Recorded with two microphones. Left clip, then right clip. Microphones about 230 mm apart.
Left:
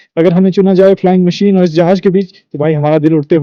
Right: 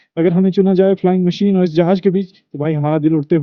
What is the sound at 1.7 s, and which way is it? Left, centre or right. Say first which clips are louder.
Speech: left 5 dB; left.